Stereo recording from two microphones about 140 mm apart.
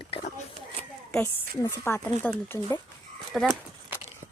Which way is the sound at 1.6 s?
15° left (ahead or behind).